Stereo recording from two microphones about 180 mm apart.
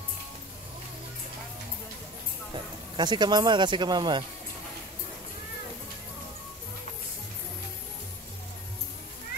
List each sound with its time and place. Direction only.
2.5 s speech: 25° right (ahead or behind)